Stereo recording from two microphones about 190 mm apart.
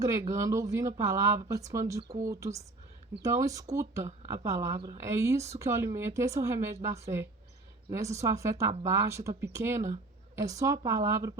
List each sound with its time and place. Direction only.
0.0 s speech: 15° right (ahead or behind)